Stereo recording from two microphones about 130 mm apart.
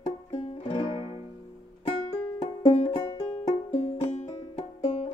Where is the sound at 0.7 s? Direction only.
45° left (ahead or behind).